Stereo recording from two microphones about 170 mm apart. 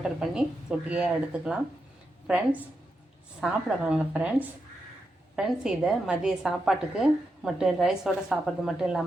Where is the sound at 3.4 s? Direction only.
Centre (ahead or behind).